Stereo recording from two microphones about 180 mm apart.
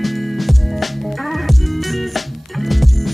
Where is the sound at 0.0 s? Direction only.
Centre (ahead or behind).